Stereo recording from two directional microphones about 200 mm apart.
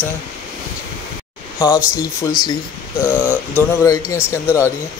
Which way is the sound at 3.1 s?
10° right (ahead or behind).